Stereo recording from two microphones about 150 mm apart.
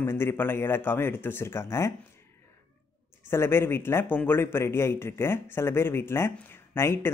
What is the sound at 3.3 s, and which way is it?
A man's voice, 15° left (ahead or behind).